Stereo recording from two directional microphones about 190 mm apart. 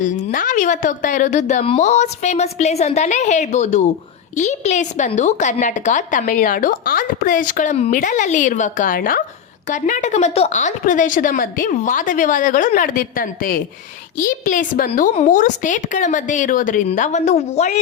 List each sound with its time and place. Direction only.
0.0 s a woman's voice: 40° left (ahead or behind)